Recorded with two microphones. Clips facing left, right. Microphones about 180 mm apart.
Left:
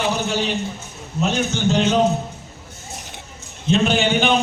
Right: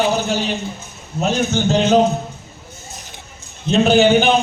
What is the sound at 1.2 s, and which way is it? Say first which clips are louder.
Speech: right 2 dB; 40° right (ahead or behind).